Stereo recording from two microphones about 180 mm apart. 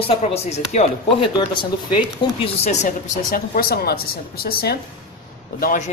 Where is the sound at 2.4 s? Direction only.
40° left (ahead or behind).